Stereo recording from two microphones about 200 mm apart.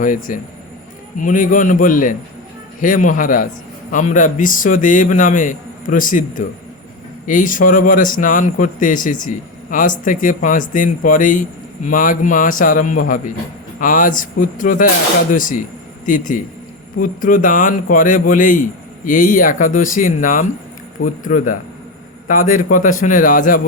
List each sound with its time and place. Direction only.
0.3 s speech: 40° left (ahead or behind)